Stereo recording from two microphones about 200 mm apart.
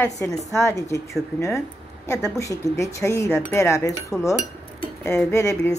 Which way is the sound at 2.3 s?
15° left (ahead or behind).